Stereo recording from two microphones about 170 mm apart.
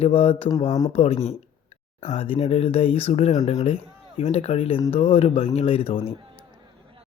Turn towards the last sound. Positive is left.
turn(degrees=35)  # may be behind; listen again after turning